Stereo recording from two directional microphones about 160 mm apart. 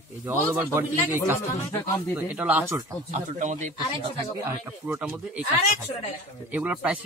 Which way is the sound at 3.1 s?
50° right (ahead or behind).